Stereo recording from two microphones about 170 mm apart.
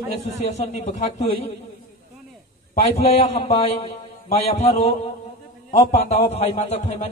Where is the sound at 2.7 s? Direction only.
40° left (ahead or behind).